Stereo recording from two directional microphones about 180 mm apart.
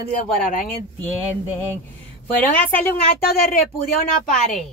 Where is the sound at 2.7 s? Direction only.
50° left (ahead or behind).